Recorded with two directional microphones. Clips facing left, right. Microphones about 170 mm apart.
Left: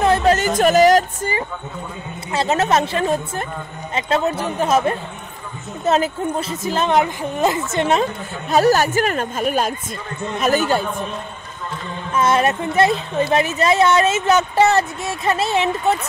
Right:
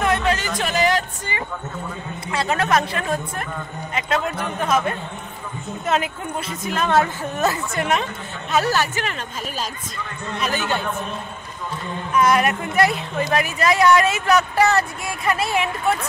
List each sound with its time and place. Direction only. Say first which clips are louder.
0.0 s music: left 5 dB; 35° left (ahead or behind)
2.3 s speech: left 3 dB; 25° left (ahead or behind)
6.9 s a woman's voice: even; 15° left (ahead or behind); by 9.8 s 55° left (ahead or behind)
10.4 s a man's voice: left 7 dB; 45° left (ahead or behind)
12.1 s speech: left 1 dB; 25° left (ahead or behind)